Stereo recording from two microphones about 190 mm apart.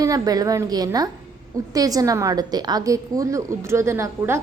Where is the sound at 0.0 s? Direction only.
20° right (ahead or behind).